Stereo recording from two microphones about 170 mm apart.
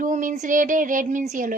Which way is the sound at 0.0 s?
50° right (ahead or behind).